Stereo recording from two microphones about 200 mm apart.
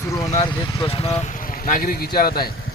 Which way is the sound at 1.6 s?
45° left (ahead or behind).